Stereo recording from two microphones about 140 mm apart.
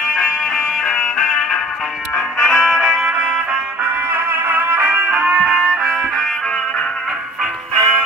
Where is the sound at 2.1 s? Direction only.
5° left (ahead or behind).